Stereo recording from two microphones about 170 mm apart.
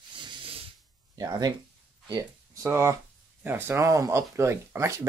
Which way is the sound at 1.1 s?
20° right (ahead or behind).